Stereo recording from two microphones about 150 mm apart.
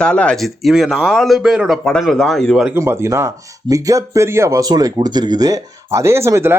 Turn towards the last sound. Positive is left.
turn(degrees=-15)  # may be behind; listen again after turning